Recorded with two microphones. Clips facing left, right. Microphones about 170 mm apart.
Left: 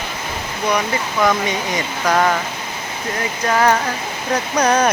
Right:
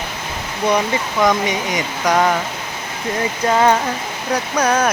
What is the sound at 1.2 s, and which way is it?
Speech, 15° right (ahead or behind).